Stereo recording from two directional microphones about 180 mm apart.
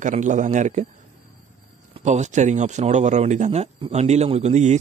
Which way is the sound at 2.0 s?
40° right (ahead or behind).